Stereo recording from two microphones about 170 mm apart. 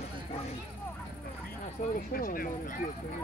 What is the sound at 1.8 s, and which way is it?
Speech, 50° left (ahead or behind).